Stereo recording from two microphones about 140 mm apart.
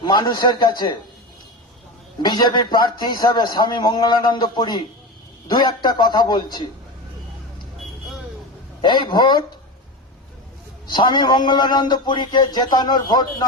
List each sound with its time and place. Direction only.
0.0 s a man's voice: 30° left (ahead or behind)
2.1 s a man's voice: 30° left (ahead or behind)
8.8 s a man's voice: 35° left (ahead or behind)
10.9 s a man's voice: 35° left (ahead or behind)